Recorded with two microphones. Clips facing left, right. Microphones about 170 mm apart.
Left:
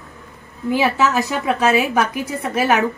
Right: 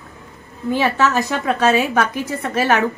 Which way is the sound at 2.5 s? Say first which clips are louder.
Even; 10° left (ahead or behind).